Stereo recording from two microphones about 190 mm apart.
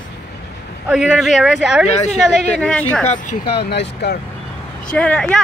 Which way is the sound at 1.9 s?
35° left (ahead or behind).